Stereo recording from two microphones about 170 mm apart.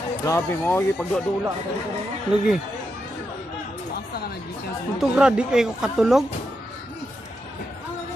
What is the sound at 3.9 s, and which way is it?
Music, 65° left (ahead or behind).